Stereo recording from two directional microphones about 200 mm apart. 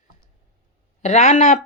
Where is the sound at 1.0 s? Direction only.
35° left (ahead or behind).